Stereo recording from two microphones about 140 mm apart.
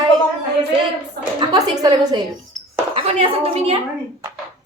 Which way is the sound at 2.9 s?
45° right (ahead or behind).